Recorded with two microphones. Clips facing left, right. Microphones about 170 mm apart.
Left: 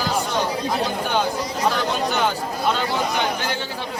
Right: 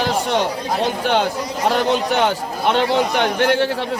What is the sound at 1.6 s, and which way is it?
A man's voice, 65° right (ahead or behind).